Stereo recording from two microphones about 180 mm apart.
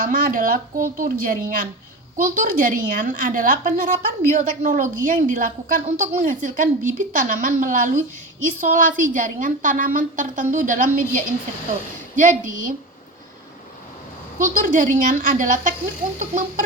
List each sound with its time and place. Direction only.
0.0 s a woman's voice: 50° right (ahead or behind)
14.3 s a woman's voice: 45° right (ahead or behind)